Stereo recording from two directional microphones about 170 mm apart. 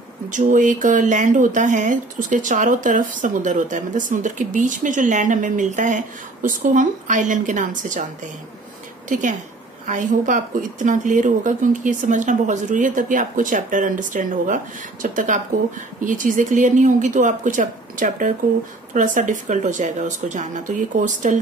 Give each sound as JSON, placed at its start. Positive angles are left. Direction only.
{"t": 0.3, "sound": "speech", "side_deg": -50}
{"t": 9.1, "sound": "speech", "side_deg": -50}